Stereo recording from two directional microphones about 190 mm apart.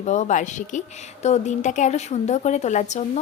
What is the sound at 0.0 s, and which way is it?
A woman's voice, 40° left (ahead or behind).